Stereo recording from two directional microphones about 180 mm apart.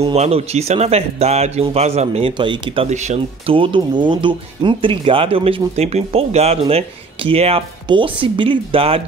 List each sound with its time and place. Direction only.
0.0 s speech: 35° right (ahead or behind)